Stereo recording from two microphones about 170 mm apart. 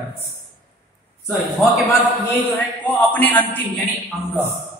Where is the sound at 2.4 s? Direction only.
10° left (ahead or behind).